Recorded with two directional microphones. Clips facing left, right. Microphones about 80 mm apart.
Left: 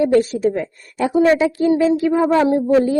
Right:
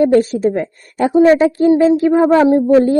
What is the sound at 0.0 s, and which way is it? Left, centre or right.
A woman's voice, right.